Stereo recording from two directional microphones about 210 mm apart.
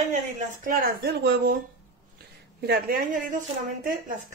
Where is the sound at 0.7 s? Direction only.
45° right (ahead or behind).